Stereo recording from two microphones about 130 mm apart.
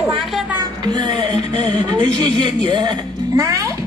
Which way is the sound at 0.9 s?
35° right (ahead or behind).